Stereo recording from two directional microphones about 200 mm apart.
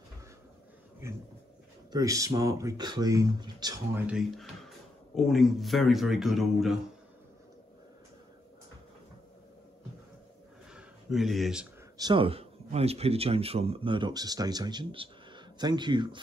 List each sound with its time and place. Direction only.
1.9 s speech: 15° right (ahead or behind); by 6.8 s centre (ahead or behind)
10.7 s a sound: centre (ahead or behind)
12.0 s speech: 25° right (ahead or behind)